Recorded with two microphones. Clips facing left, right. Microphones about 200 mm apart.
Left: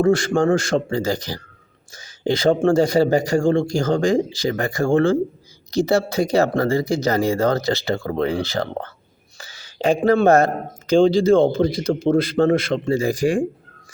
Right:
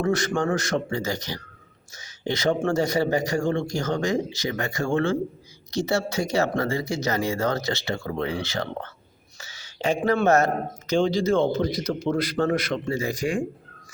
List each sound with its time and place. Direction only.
0.0 s speech: 30° left (ahead or behind)